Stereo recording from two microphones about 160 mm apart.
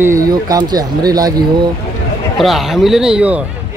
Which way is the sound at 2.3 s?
Centre (ahead or behind).